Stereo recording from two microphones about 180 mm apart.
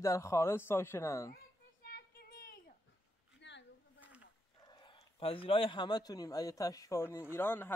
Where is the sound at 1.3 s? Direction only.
55° left (ahead or behind).